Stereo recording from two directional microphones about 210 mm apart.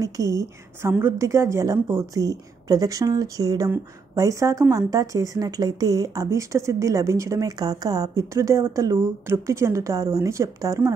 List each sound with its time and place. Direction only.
0.0 s speech: 15° right (ahead or behind)